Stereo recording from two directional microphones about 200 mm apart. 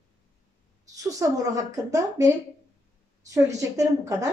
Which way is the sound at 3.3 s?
15° right (ahead or behind).